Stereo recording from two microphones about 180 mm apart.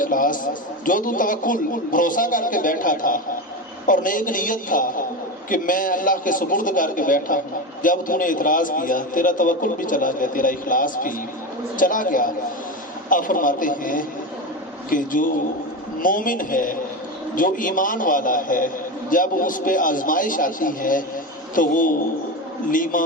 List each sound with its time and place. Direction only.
0.0 s a man's voice: 50° left (ahead or behind)